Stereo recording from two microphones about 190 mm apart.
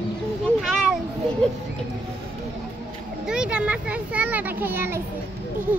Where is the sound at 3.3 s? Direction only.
5° right (ahead or behind).